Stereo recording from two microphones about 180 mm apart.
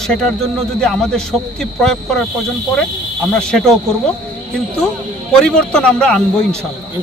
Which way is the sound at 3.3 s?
5° left (ahead or behind).